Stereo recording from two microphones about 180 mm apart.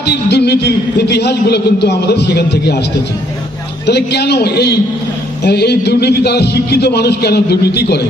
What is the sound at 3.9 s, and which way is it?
A man's voice, 65° left (ahead or behind).